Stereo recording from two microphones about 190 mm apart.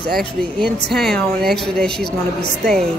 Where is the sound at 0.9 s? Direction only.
Centre (ahead or behind).